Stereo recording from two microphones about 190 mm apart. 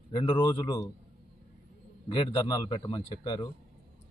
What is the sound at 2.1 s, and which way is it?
Speech, 25° left (ahead or behind).